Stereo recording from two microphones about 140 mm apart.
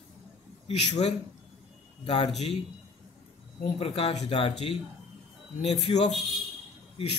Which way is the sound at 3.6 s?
45° left (ahead or behind).